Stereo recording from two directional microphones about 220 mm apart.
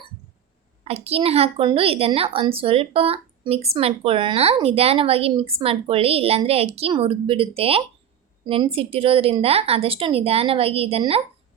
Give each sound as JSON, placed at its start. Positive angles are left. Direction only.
{"t": 0.9, "sound": "a woman's voice", "side_deg": -25}